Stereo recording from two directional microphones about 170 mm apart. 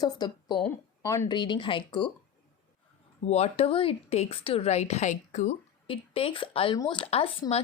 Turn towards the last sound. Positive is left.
turn(degrees=35)  # may be behind; listen again after turning